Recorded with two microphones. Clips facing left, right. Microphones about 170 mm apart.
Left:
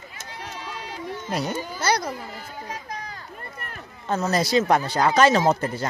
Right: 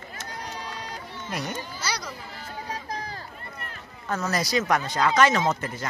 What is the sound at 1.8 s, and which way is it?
Speech, 55° left (ahead or behind).